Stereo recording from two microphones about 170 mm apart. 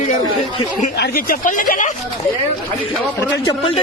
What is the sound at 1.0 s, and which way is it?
Speech, 60° left (ahead or behind).